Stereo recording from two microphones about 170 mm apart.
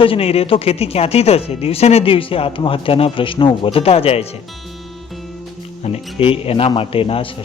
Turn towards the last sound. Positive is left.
turn(degrees=35)  # may be behind; listen again after turning